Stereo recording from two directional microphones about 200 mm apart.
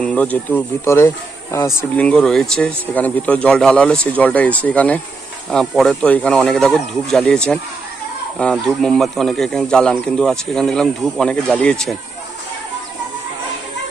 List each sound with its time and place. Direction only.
0.0 s speech: 5° left (ahead or behind)